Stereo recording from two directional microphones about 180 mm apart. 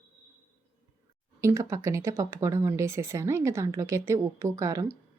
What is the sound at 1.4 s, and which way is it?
Speech, 15° right (ahead or behind).